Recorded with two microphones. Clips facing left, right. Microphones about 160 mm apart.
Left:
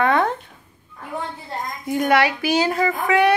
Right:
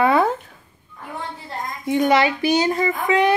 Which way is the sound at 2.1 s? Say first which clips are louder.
Left 2 dB; 70° left (ahead or behind).